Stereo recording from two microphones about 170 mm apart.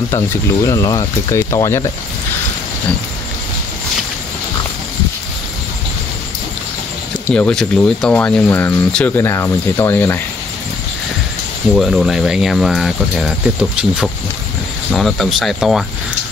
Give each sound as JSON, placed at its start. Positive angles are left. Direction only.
{"t": 0.7, "sound": "speech", "side_deg": 20}
{"t": 7.3, "sound": "speech", "side_deg": 5}
{"t": 11.7, "sound": "speech", "side_deg": 0}